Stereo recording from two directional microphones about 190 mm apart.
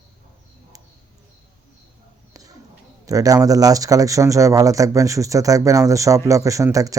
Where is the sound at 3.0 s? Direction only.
15° right (ahead or behind).